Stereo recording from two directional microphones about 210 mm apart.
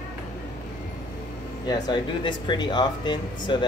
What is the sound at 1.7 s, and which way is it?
Speech, 20° left (ahead or behind).